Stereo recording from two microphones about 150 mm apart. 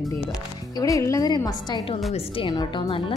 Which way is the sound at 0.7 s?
20° left (ahead or behind).